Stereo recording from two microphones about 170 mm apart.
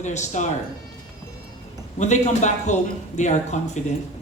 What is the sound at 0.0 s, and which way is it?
Speech, 45° left (ahead or behind).